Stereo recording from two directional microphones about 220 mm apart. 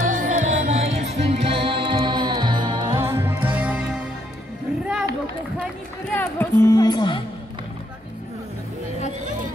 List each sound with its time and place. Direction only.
0.1 s music: 35° right (ahead or behind); by 4.0 s 5° right (ahead or behind)
6.0 s music: 10° left (ahead or behind)